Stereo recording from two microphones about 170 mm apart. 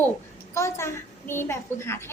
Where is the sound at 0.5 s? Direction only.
15° left (ahead or behind).